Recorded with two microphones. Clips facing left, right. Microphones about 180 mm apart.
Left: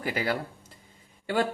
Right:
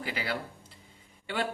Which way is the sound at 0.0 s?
45° left (ahead or behind).